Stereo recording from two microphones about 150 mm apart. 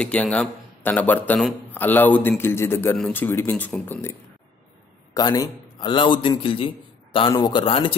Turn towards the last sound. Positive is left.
turn(degrees=35)  # may be behind; listen again after turning